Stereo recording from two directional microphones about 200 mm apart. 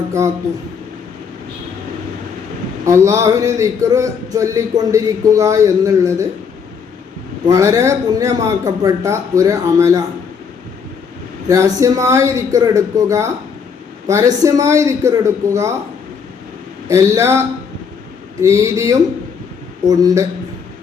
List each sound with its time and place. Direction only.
2.8 s speech: 15° right (ahead or behind)
7.4 s speech: 15° right (ahead or behind)
11.4 s speech: 15° right (ahead or behind)
16.9 s speech: 15° right (ahead or behind)